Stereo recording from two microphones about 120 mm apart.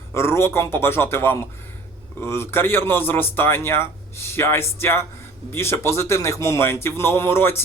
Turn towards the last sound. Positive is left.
turn(degrees=20)  # may be behind; listen again after turning